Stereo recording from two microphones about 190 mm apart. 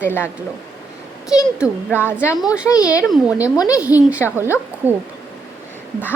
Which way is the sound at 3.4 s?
20° left (ahead or behind).